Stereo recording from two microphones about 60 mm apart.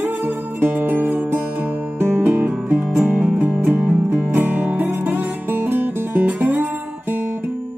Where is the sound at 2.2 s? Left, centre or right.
Right.